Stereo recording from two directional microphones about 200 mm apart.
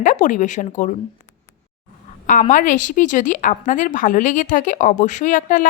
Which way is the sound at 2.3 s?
40° left (ahead or behind).